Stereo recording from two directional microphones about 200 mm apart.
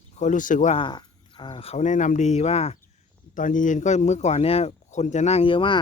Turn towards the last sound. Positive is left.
turn(degrees=25)  # may be behind; listen again after turning